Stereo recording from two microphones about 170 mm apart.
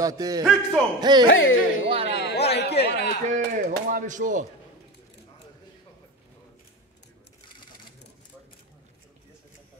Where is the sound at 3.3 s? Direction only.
50° right (ahead or behind).